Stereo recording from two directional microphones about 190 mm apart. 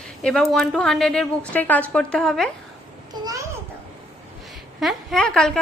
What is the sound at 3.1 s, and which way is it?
Babbling, 20° right (ahead or behind).